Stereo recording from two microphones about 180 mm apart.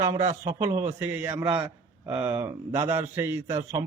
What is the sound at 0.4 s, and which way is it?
A man's voice, 15° right (ahead or behind).